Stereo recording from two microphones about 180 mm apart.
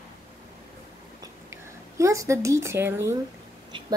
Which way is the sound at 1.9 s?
15° right (ahead or behind).